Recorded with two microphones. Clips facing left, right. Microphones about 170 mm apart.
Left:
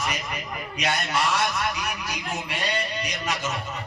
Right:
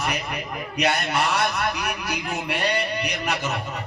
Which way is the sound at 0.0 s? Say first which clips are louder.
Right 3 dB; 60° right (ahead or behind).